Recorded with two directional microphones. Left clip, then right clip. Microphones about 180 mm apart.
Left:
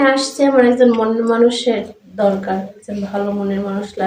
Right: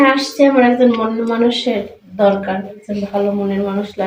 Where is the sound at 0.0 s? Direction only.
20° left (ahead or behind).